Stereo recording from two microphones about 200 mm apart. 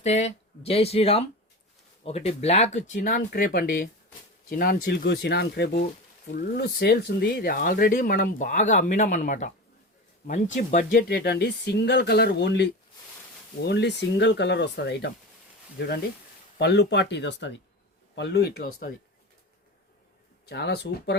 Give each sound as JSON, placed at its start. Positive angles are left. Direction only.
{"t": 0.0, "sound": "speech", "side_deg": 35}
{"t": 16.6, "sound": "speech", "side_deg": 60}
{"t": 20.5, "sound": "speech", "side_deg": 55}